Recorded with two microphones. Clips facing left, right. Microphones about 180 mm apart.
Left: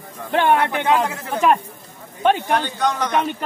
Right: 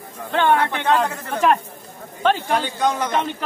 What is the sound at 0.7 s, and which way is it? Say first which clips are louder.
Speech: left 1 dB; 10° left (ahead or behind).